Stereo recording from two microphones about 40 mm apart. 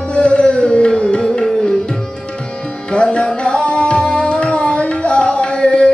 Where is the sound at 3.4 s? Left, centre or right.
Left.